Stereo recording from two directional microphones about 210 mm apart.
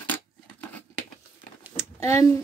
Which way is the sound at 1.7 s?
15° left (ahead or behind).